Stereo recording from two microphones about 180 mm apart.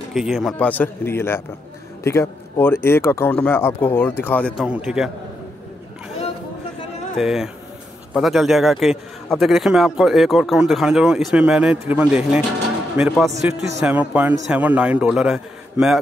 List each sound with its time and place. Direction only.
0.1 s speech: centre (ahead or behind)
4.6 s a man's voice: 5° right (ahead or behind)
7.2 s a man's voice: 5° right (ahead or behind)